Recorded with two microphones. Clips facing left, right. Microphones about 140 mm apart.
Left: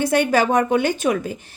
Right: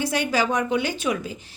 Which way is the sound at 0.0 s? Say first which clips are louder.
Left 6 dB; 55° left (ahead or behind).